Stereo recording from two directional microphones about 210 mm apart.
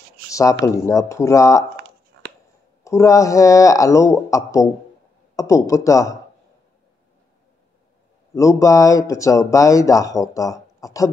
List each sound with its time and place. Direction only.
0.3 s speech: 15° left (ahead or behind)
2.1 s a sound: 60° right (ahead or behind)
2.8 s speech: 15° left (ahead or behind)
8.4 s speech: 15° left (ahead or behind)